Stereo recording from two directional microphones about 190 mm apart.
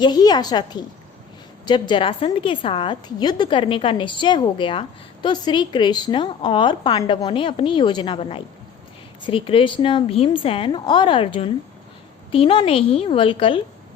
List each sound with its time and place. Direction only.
0.0 s a woman's voice: 20° left (ahead or behind)